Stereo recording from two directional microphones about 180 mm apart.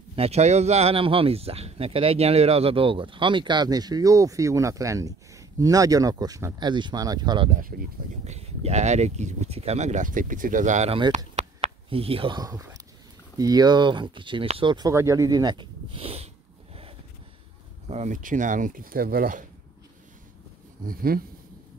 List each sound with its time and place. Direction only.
0.1 s speech: 35° right (ahead or behind)
8.3 s speech: 35° right (ahead or behind)
11.3 s a sound: 35° right (ahead or behind)
13.4 s speech: 20° right (ahead or behind)
17.8 s speech: 40° right (ahead or behind)
20.8 s speech: 55° right (ahead or behind)